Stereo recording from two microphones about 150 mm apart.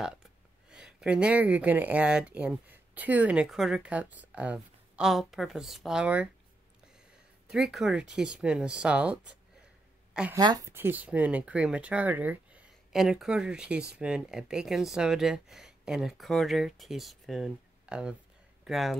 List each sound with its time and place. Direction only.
0.7 s speech: 5° right (ahead or behind)
7.4 s speech: centre (ahead or behind)
10.3 s a woman's voice: 25° right (ahead or behind)
10.7 s speech: 15° right (ahead or behind)